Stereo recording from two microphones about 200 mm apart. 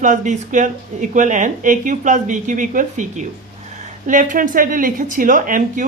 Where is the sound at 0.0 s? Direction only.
40° right (ahead or behind).